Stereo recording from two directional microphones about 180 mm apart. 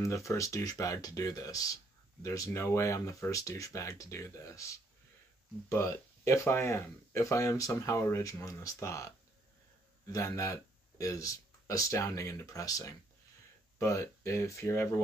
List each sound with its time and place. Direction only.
0.0 s speech: 15° left (ahead or behind)
10.1 s speech: 15° left (ahead or behind)